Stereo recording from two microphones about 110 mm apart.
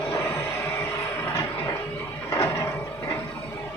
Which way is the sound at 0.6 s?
15° left (ahead or behind).